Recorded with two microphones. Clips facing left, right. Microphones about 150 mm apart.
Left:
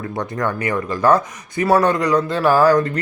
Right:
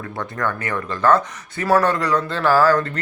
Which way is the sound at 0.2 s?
15° left (ahead or behind).